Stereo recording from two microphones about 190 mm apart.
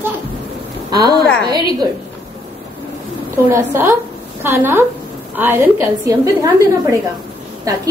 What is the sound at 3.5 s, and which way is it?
A woman's voice, 15° right (ahead or behind).